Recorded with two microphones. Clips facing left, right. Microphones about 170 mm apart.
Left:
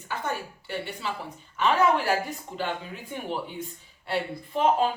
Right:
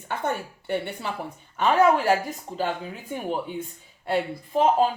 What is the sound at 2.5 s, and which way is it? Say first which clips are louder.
Speech: right 6 dB; 35° right (ahead or behind).